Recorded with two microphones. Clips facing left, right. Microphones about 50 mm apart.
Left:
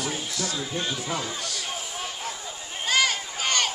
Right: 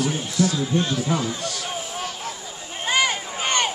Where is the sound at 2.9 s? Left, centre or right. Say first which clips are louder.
Right 2 dB; centre.